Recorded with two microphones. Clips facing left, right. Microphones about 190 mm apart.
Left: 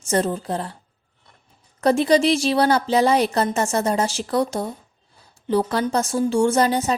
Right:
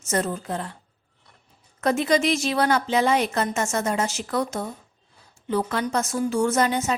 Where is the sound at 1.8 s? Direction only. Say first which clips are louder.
Left 4 dB; 35° left (ahead or behind).